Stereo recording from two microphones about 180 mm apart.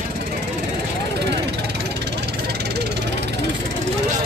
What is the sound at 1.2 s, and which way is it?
Vehicle, 70° right (ahead or behind).